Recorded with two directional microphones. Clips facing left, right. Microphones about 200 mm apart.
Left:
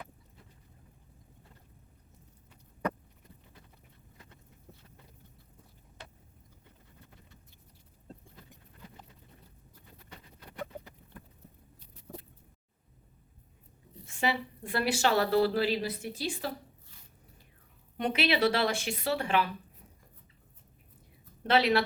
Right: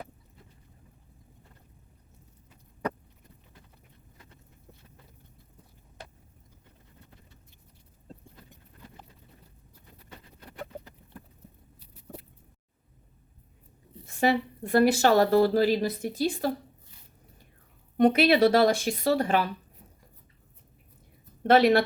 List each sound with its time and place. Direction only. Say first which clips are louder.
14.2 s a woman's voice: right 7 dB; 45° right (ahead or behind)
17.9 s speech: right 9 dB; 45° right (ahead or behind)
21.4 s speech: right 6 dB; 50° right (ahead or behind)